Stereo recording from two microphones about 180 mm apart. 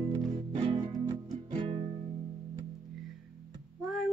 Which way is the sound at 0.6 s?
25° right (ahead or behind).